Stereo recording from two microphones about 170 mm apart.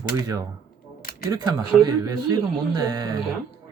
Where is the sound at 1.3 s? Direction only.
20° right (ahead or behind).